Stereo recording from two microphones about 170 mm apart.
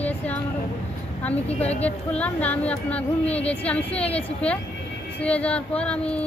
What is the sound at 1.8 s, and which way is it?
Speech, 10° left (ahead or behind).